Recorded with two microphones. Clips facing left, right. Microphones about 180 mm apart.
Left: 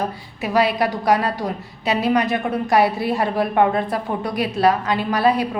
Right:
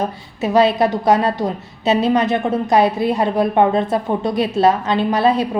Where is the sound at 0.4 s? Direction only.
25° right (ahead or behind).